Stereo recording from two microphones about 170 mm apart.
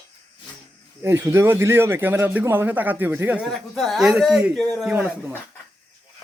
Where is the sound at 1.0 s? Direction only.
15° right (ahead or behind); by 4.8 s 5° left (ahead or behind).